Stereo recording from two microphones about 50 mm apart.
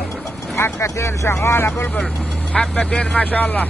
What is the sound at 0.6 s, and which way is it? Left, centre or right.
Speech, left.